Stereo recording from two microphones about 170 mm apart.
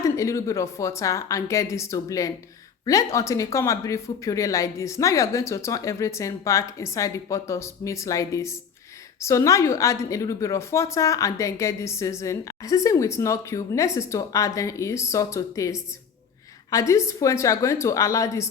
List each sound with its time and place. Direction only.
0.0 s a woman's voice: 20° left (ahead or behind)
16.7 s a woman's voice: 20° left (ahead or behind)